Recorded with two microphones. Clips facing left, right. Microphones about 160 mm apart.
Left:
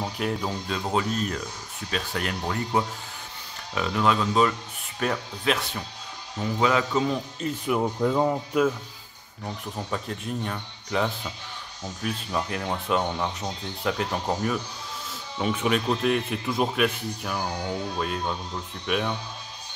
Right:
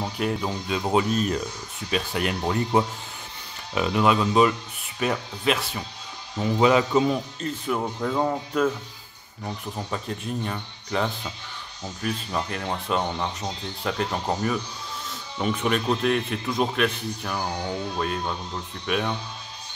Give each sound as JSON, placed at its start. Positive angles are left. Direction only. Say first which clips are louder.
{"t": 0.0, "sound": "speech", "louder": "right 2 dB", "side_deg": 0}
{"t": 0.8, "sound": "speech", "louder": "right 4 dB", "side_deg": -20}
{"t": 5.0, "sound": "speech", "louder": "right 2 dB", "side_deg": -5}
{"t": 6.6, "sound": "speech", "louder": "right 4 dB", "side_deg": -20}
{"t": 7.3, "sound": "speech", "louder": "left 1 dB", "side_deg": 10}